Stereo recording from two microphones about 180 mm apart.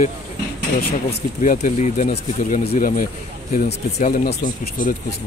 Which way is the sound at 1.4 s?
45° left (ahead or behind).